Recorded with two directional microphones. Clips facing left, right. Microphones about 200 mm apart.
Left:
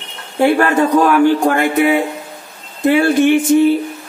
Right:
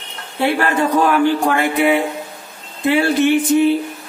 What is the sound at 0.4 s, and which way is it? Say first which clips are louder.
Speech: left 5 dB; 45° left (ahead or behind).